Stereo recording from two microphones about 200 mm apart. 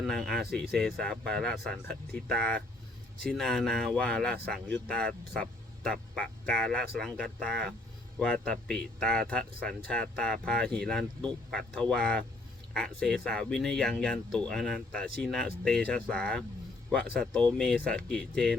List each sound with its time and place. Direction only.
0.0 s speech: centre (ahead or behind)
3.3 s speech: centre (ahead or behind)